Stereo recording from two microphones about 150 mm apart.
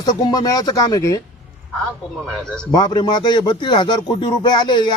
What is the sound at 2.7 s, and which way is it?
Speech, 25° left (ahead or behind).